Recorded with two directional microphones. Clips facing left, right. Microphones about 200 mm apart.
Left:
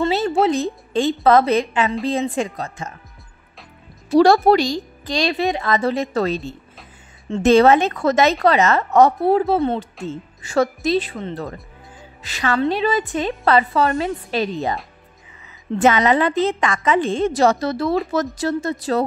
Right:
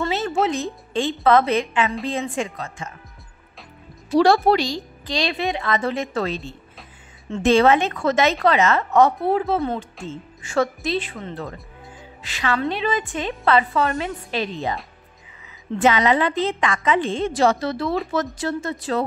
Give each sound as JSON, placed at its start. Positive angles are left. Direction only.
{"t": 0.1, "sound": "a woman's voice", "side_deg": 35}
{"t": 4.2, "sound": "a woman's voice", "side_deg": 45}
{"t": 15.8, "sound": "a woman's voice", "side_deg": 45}